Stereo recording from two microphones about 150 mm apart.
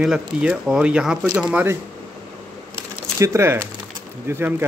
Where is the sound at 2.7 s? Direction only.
20° right (ahead or behind).